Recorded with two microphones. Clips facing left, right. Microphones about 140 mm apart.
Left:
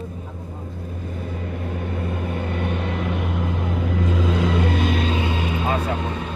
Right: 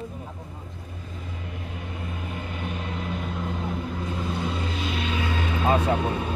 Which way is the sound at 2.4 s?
65° left (ahead or behind).